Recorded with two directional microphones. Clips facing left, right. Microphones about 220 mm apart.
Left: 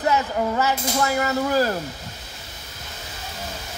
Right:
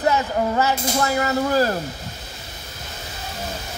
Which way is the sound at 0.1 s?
35° right (ahead or behind).